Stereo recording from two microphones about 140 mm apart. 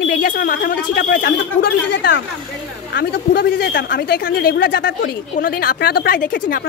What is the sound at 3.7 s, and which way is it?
A woman's voice, 90° left.